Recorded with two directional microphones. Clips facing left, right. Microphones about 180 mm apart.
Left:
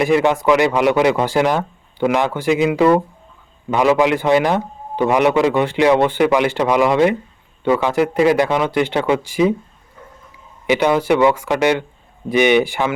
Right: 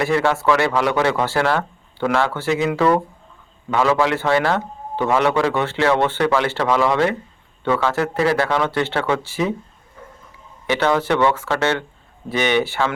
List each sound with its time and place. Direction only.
0.0 s a man's voice: 15° left (ahead or behind)
10.7 s a man's voice: 15° left (ahead or behind)